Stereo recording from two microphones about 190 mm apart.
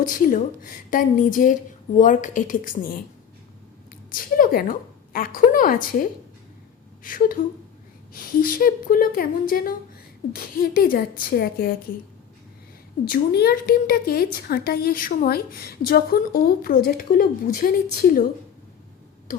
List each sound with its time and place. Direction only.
0.0 s a woman's voice: 45° left (ahead or behind)
4.1 s a woman's voice: 50° left (ahead or behind)
13.1 s a woman's voice: 55° left (ahead or behind)